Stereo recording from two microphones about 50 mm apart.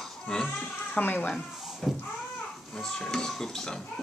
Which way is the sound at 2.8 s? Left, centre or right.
Centre.